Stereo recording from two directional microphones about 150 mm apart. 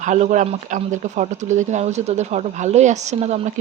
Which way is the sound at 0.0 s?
55° right (ahead or behind).